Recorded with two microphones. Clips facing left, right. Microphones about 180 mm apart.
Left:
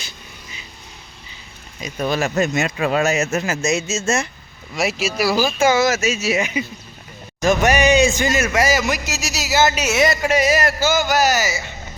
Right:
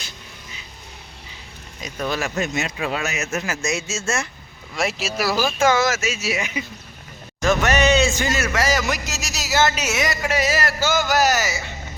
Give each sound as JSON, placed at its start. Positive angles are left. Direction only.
{"t": 1.8, "sound": "speech", "side_deg": 15}
{"t": 2.3, "sound": "speech", "side_deg": 45}
{"t": 4.7, "sound": "speech", "side_deg": 5}
{"t": 9.9, "sound": "speech", "side_deg": 30}
{"t": 10.3, "sound": "speech", "side_deg": 15}